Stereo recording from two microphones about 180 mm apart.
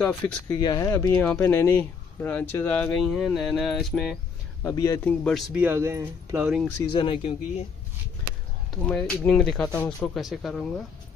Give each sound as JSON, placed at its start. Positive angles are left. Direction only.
{"t": 0.0, "sound": "speech", "side_deg": 20}
{"t": 3.0, "sound": "speech", "side_deg": 0}
{"t": 4.6, "sound": "speech", "side_deg": 15}
{"t": 5.0, "sound": "speech", "side_deg": 0}
{"t": 6.9, "sound": "speech", "side_deg": 30}
{"t": 8.8, "sound": "speech", "side_deg": 5}